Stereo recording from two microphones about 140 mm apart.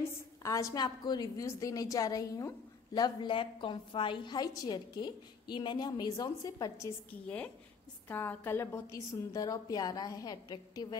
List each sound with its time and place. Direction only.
0.4 s a woman's voice: 20° left (ahead or behind)
7.1 s a woman's voice: 10° left (ahead or behind); by 11.0 s 30° left (ahead or behind)